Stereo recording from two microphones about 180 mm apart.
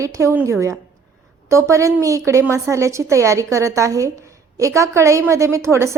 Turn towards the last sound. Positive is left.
turn(degrees=-15)  # may be behind; listen again after turning